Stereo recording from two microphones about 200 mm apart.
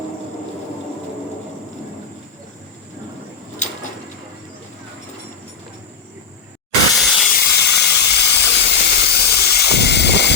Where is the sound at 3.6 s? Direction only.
35° left (ahead or behind).